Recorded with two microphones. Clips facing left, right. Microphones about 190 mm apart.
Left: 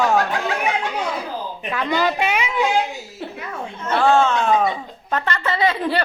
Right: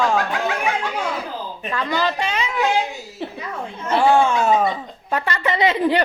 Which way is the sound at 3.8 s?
10° right (ahead or behind).